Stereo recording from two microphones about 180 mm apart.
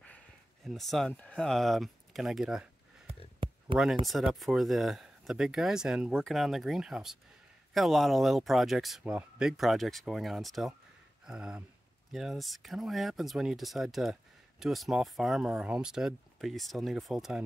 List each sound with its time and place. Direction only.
0.7 s speech: centre (ahead or behind)
3.4 s a sound: 30° right (ahead or behind)
4.0 s speech: centre (ahead or behind)